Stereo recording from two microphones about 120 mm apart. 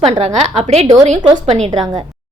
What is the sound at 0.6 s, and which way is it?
Speech, 60° right (ahead or behind).